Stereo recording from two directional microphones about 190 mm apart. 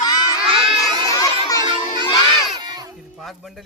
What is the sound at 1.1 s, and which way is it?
Children playing, 20° left (ahead or behind).